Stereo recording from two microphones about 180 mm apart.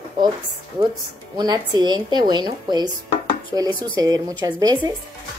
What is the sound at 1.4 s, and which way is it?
Speech, 25° right (ahead or behind).